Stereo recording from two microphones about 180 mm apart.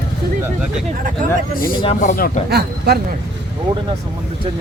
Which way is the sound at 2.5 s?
60° right (ahead or behind).